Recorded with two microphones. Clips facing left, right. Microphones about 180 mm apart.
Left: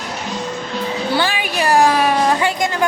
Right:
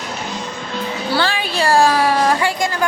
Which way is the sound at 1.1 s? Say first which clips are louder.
Right 2 dB; 15° left (ahead or behind).